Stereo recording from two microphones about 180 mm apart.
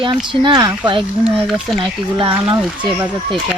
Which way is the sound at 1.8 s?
25° right (ahead or behind).